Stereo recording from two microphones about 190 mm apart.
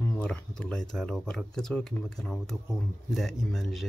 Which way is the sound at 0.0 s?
10° left (ahead or behind).